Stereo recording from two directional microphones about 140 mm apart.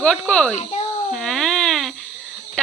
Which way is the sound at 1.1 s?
Centre (ahead or behind).